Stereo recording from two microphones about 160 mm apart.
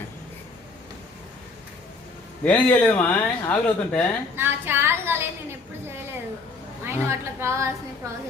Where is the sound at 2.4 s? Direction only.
10° left (ahead or behind).